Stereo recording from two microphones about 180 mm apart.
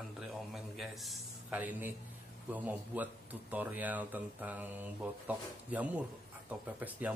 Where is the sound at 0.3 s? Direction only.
Centre (ahead or behind).